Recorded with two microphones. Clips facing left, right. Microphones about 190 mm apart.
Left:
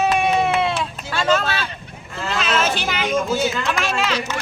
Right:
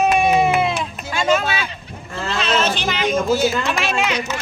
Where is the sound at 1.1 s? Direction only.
15° right (ahead or behind).